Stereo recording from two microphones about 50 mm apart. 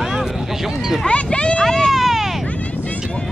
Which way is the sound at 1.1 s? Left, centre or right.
Left.